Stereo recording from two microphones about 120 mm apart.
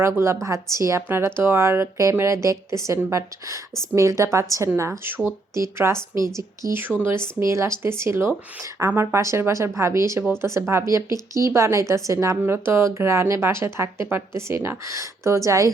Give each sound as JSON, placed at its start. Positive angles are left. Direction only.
{"t": 0.4, "sound": "a woman's voice", "side_deg": -25}